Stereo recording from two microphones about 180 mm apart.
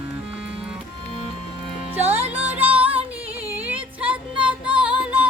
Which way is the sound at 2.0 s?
35° right (ahead or behind).